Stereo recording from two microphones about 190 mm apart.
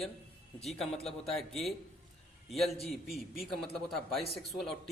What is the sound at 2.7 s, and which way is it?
A man's voice, centre (ahead or behind).